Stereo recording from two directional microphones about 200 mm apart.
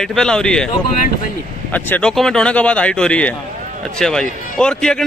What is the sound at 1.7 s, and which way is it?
A man's voice, 5° left (ahead or behind).